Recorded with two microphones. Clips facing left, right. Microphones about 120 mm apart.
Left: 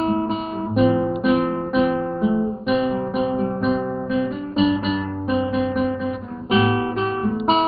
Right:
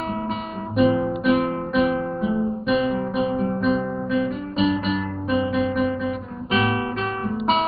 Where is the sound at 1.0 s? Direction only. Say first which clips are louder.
Left 1 dB; 30° left (ahead or behind).